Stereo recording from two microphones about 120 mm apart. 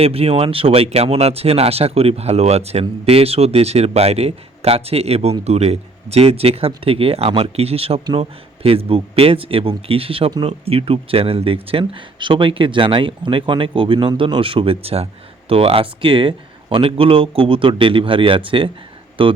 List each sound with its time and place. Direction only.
0.0 s speech: 55° right (ahead or behind)